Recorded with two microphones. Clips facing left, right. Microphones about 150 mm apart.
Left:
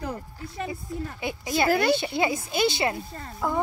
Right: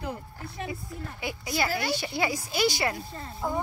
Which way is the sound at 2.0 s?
20° left (ahead or behind).